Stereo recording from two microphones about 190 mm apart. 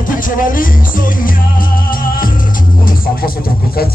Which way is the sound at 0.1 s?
45° left (ahead or behind).